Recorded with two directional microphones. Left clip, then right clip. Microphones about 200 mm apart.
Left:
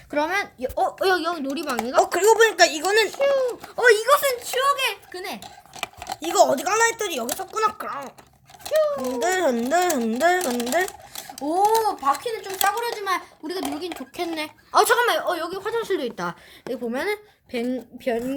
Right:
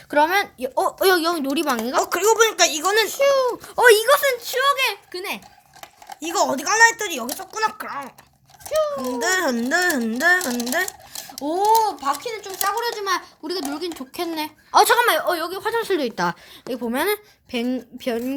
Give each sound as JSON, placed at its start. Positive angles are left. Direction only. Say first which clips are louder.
{"t": 0.1, "sound": "a child's voice", "louder": "right 6 dB", "side_deg": -30}
{"t": 2.0, "sound": "a child's voice", "louder": "right 1 dB", "side_deg": 5}
{"t": 3.1, "sound": "speech", "louder": "right 3 dB", "side_deg": -35}
{"t": 6.1, "sound": "speech", "louder": "left 3 dB", "side_deg": 10}
{"t": 9.1, "sound": "a child's voice", "louder": "right 2 dB", "side_deg": 5}
{"t": 11.2, "sound": "speech", "louder": "left 1 dB", "side_deg": -15}
{"t": 14.2, "sound": "speech", "louder": "right 2 dB", "side_deg": -5}
{"t": 14.9, "sound": "speech", "louder": "right 3 dB", "side_deg": -30}
{"t": 16.9, "sound": "a child's voice", "louder": "right 6 dB", "side_deg": -40}